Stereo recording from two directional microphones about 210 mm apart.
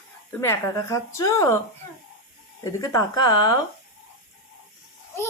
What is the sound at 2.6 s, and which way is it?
Speech, 15° left (ahead or behind).